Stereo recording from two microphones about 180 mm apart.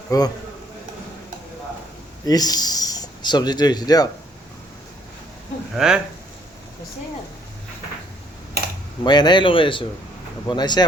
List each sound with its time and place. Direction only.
0.1 s speech: 20° left (ahead or behind)
2.2 s speech: 20° left (ahead or behind)
5.7 s speech: 5° right (ahead or behind)
9.0 s speech: 25° left (ahead or behind)